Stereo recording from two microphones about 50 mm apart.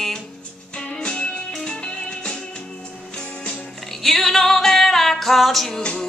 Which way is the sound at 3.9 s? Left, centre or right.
Centre.